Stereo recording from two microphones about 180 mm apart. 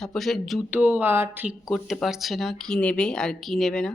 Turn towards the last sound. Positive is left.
turn(degrees=5)  # may be behind; listen again after turning